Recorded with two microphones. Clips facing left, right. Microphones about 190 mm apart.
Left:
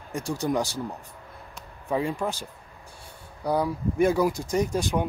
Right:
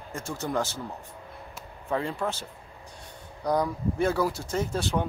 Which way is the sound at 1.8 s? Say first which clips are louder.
Left 2 dB; 15° left (ahead or behind).